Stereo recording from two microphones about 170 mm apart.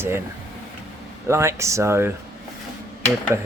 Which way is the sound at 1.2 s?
15° right (ahead or behind).